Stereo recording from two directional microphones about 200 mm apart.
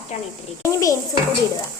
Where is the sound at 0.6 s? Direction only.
15° left (ahead or behind).